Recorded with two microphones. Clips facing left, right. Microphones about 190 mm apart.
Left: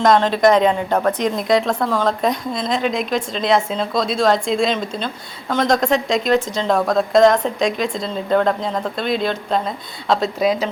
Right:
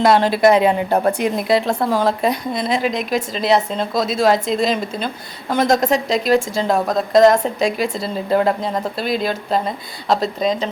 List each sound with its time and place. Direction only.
0.0 s speech: 10° right (ahead or behind)
0.9 s speech: 30° right (ahead or behind)
1.2 s speech: 10° right (ahead or behind)
10.4 s speech: 10° left (ahead or behind)